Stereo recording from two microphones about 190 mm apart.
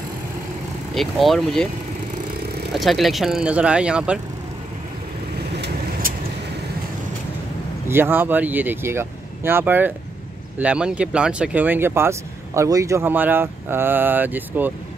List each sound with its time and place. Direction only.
0.9 s speech: centre (ahead or behind)
2.7 s speech: centre (ahead or behind)
6.0 s vehicle: 45° right (ahead or behind)
7.9 s speech: 10° right (ahead or behind)